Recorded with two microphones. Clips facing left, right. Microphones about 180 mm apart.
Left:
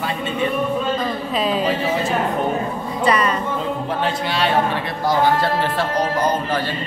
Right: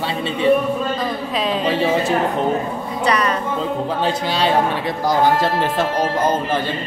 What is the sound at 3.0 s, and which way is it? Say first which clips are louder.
Speech: left 1 dB; 5° left (ahead or behind).